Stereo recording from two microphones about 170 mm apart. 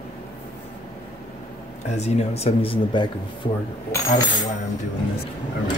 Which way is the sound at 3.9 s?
15° left (ahead or behind).